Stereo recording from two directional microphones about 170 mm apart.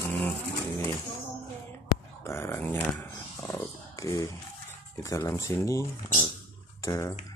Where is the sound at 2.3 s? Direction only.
15° left (ahead or behind).